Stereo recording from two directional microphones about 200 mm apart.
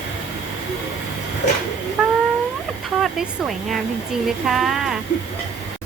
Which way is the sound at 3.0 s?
Centre (ahead or behind).